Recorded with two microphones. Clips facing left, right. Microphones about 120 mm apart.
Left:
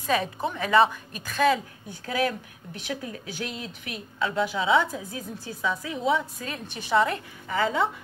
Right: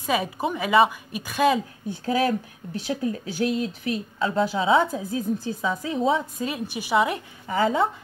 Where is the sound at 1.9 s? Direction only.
35° right (ahead or behind).